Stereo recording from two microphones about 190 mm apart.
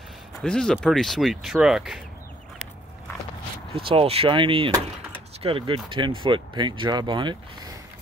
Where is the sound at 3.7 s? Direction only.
30° right (ahead or behind).